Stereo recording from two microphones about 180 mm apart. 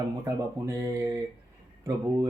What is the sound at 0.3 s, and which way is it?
Speech, 15° right (ahead or behind).